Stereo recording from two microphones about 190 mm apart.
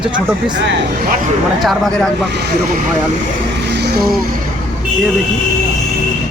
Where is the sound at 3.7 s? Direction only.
60° right (ahead or behind).